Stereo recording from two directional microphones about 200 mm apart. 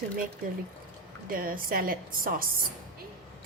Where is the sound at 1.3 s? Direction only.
45° right (ahead or behind).